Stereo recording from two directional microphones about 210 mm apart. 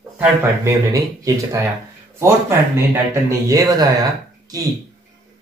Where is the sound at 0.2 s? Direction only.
15° right (ahead or behind).